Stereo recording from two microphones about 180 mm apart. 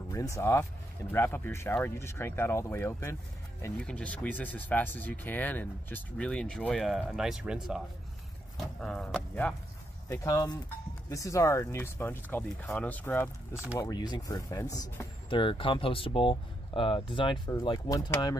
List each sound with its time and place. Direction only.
0.1 s speech: 15° left (ahead or behind)
10.0 s speech: 20° left (ahead or behind)